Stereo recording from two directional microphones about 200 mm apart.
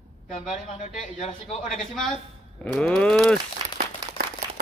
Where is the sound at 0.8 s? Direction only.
40° left (ahead or behind).